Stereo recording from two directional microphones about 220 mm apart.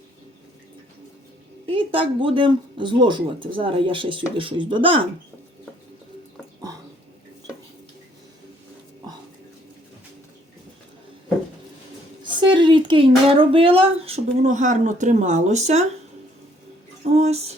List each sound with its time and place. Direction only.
1.6 s speech: 25° right (ahead or behind)
12.2 s speech: 20° right (ahead or behind)
17.0 s a sound: 30° right (ahead or behind)